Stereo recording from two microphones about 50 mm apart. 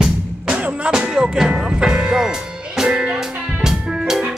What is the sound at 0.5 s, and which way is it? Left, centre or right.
Music, right.